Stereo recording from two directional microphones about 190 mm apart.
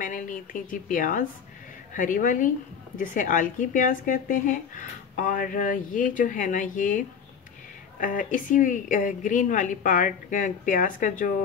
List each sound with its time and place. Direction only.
0.0 s a woman's voice: 45° left (ahead or behind)